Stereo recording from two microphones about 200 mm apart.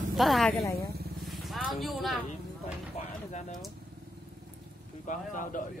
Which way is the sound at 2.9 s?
35° left (ahead or behind).